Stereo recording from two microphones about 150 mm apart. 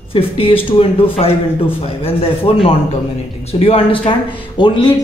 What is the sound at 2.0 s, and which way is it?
Speech, 40° left (ahead or behind).